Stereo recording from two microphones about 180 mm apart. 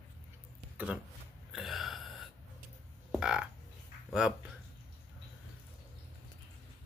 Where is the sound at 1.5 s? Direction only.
Centre (ahead or behind).